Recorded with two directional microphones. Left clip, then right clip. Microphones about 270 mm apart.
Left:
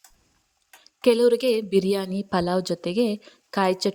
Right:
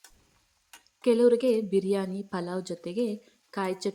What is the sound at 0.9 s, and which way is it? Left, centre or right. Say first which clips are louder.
A woman's voice: left 4 dB; left.